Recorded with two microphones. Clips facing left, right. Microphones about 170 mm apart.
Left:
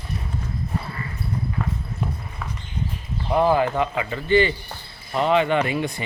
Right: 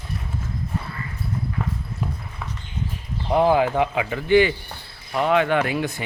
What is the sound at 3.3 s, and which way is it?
A man's voice, 15° right (ahead or behind).